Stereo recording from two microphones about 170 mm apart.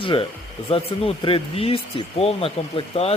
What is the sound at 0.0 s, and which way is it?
Speech, 30° left (ahead or behind).